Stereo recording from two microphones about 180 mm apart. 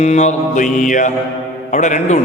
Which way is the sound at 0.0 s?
40° left (ahead or behind).